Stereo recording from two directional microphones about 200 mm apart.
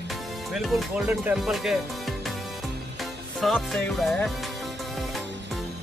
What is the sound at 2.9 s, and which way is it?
Music, centre (ahead or behind).